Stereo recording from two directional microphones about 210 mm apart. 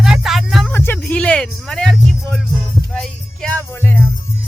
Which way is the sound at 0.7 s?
10° left (ahead or behind).